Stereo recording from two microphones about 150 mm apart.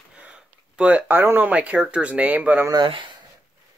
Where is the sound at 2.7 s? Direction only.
30° right (ahead or behind).